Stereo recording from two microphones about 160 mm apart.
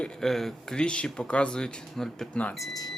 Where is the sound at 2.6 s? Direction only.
25° left (ahead or behind).